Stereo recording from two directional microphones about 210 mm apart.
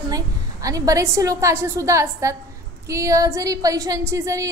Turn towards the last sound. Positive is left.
turn(degrees=-15)  # may be behind; listen again after turning